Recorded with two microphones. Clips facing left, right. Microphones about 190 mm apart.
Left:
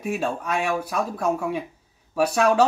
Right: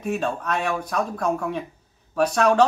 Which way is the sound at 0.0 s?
10° left (ahead or behind).